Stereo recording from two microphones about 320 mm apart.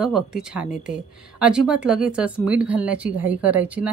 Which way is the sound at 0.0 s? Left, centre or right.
Centre.